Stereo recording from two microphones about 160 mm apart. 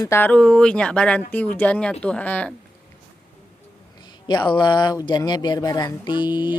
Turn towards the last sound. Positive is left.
turn(degrees=30)  # may be behind; listen again after turning